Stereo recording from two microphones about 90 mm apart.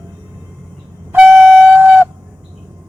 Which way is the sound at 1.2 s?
20° right (ahead or behind).